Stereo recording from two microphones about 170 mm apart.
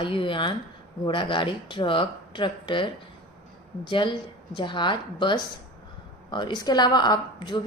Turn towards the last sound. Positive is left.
turn(degrees=25)  # may be behind; listen again after turning